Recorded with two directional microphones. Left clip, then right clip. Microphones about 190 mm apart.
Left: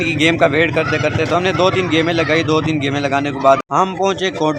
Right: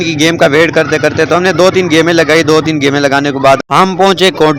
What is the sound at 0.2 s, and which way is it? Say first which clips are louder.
Speech: right 6 dB; 25° right (ahead or behind).